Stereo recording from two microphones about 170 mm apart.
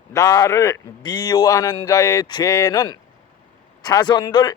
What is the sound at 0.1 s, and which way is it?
Speech, 20° left (ahead or behind).